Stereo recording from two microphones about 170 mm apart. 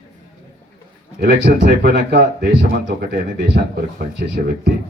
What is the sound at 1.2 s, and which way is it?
Speech, 90° right.